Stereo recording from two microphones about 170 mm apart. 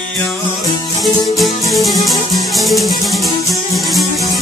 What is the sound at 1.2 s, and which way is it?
Music, centre (ahead or behind).